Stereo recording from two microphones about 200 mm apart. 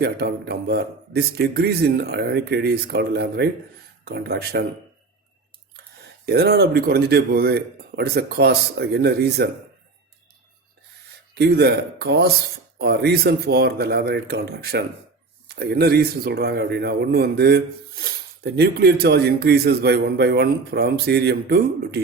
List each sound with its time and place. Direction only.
0.0 s speech: 55° right (ahead or behind)
5.7 s speech: 55° right (ahead or behind)
11.3 s speech: 55° right (ahead or behind)